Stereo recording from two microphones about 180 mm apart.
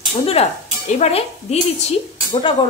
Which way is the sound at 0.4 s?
35° left (ahead or behind).